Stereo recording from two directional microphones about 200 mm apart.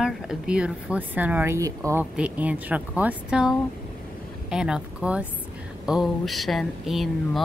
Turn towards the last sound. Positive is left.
turn(degrees=0)  # may be behind; listen again after turning